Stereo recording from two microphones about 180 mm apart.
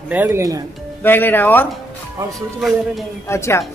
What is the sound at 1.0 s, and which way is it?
Speech, 10° left (ahead or behind).